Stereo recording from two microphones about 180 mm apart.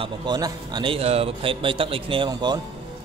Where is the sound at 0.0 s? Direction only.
25° right (ahead or behind).